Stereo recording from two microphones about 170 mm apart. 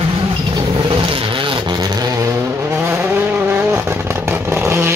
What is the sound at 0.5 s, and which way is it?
Vehicle, 30° right (ahead or behind).